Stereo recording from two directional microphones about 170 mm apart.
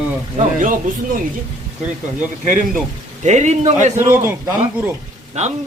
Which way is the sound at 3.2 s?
40° right (ahead or behind).